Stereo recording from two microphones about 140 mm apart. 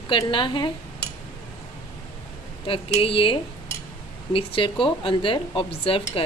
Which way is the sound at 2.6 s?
40° left (ahead or behind).